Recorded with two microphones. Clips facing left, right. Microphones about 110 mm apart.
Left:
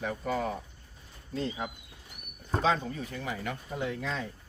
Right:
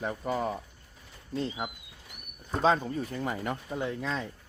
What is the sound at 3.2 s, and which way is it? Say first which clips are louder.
Speech: right 2 dB; 45° right (ahead or behind).